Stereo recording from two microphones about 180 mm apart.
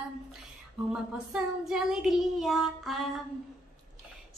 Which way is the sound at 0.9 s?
5° right (ahead or behind).